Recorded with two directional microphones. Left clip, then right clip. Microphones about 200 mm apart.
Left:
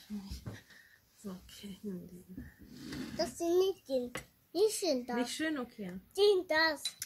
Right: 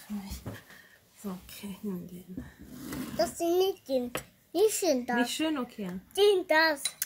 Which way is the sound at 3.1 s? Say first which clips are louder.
Right 4 dB; centre (ahead or behind).